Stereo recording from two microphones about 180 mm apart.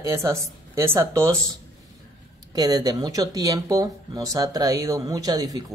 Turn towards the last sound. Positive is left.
turn(degrees=-20)  # may be behind; listen again after turning